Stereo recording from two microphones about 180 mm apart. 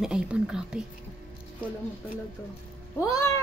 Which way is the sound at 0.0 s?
5° right (ahead or behind).